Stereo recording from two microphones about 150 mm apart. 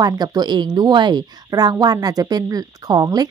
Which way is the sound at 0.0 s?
25° right (ahead or behind).